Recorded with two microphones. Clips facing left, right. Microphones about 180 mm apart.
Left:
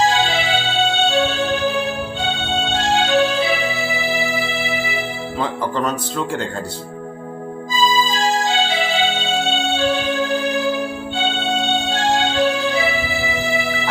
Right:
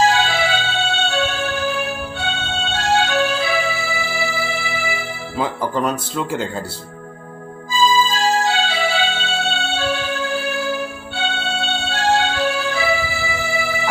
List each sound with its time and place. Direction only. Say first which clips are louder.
0.0 s music: right 1 dB; 20° left (ahead or behind)
5.4 s speech: right 1 dB; 10° right (ahead or behind)
7.7 s music: right 2 dB; 20° left (ahead or behind)